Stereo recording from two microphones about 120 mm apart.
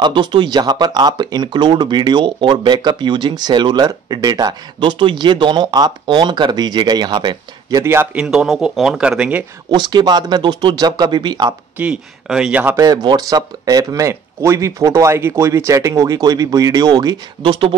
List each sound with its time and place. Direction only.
0.0 s speech: 40° right (ahead or behind)
7.8 s speech: 20° right (ahead or behind)
9.7 s speech: 40° right (ahead or behind)
11.8 s speech: 5° right (ahead or behind)
12.7 s speech: 30° right (ahead or behind); by 17.7 s 45° right (ahead or behind)